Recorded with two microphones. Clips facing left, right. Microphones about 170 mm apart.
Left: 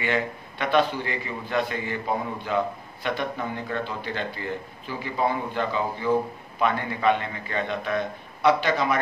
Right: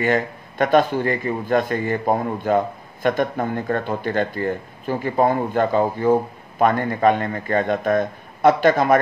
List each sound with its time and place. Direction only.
0.0 s a man's voice: 45° right (ahead or behind)